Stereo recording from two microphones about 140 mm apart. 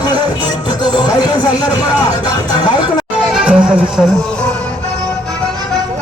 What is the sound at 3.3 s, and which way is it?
Music, 5° right (ahead or behind).